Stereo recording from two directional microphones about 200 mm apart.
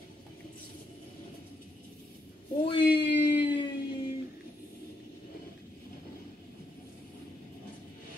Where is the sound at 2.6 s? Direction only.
25° left (ahead or behind).